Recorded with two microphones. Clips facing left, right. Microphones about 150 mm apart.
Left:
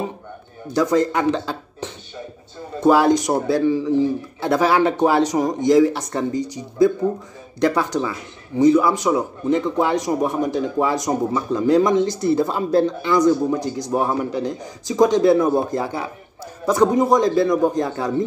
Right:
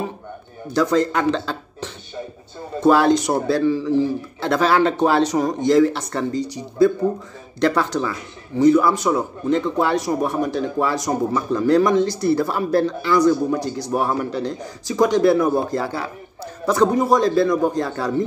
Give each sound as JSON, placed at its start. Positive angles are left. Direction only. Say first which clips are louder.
{"t": 0.7, "sound": "a man's voice", "louder": "even", "side_deg": 15}
{"t": 7.6, "sound": "a man's voice", "louder": "even", "side_deg": 15}